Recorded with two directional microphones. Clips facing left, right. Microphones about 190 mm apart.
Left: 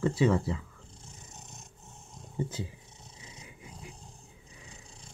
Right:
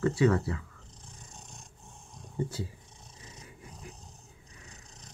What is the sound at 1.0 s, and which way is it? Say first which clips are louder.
Roar: right 1 dB; 15° right (ahead or behind).